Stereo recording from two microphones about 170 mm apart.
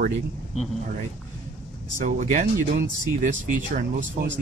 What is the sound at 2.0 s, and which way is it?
Speech, 50° right (ahead or behind).